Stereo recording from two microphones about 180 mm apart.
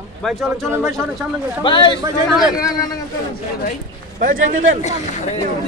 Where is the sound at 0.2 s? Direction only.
Centre (ahead or behind).